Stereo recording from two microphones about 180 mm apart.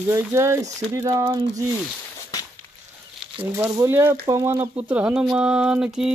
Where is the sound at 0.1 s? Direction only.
15° right (ahead or behind).